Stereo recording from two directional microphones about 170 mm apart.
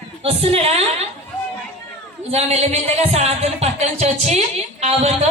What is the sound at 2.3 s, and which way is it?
Speech, 40° right (ahead or behind).